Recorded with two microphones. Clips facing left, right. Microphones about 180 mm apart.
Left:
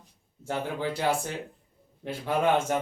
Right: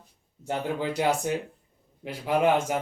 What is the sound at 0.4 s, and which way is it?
Speech, 15° right (ahead or behind).